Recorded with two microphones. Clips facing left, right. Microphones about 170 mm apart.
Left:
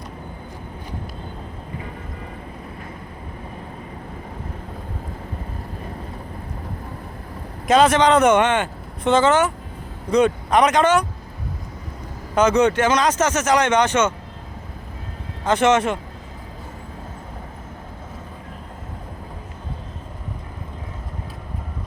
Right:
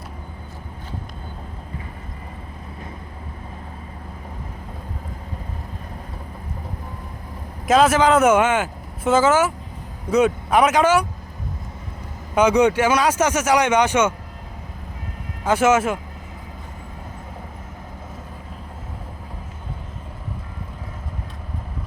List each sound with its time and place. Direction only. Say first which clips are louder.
7.7 s speech: left 1 dB; 5° right (ahead or behind)
12.3 s speech: right 1 dB; 10° right (ahead or behind)
15.4 s speech: even; 5° right (ahead or behind)